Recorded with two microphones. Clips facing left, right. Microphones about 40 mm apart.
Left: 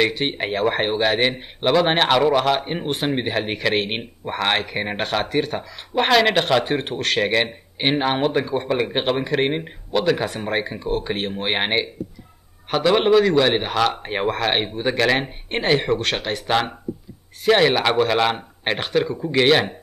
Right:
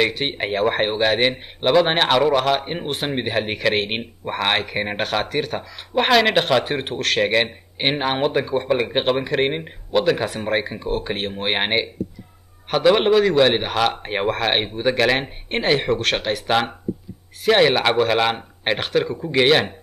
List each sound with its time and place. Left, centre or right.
0.0 s a man's voice: centre